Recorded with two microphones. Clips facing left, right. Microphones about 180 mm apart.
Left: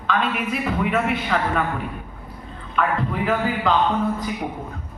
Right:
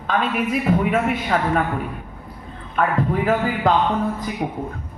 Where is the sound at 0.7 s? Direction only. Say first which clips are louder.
Right 2 dB; 45° right (ahead or behind).